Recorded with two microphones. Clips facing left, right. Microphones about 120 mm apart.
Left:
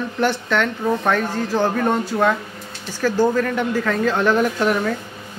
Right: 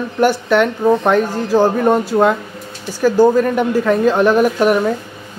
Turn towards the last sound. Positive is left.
turn(degrees=-15)  # may be behind; listen again after turning